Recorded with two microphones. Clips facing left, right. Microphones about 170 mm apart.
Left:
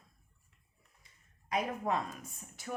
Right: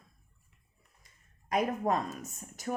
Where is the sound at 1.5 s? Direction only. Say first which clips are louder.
Right 4 dB; 45° right (ahead or behind).